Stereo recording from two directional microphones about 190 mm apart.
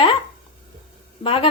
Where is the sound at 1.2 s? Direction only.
30° left (ahead or behind).